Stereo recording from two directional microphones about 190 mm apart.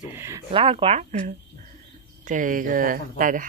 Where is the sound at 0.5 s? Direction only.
30° right (ahead or behind).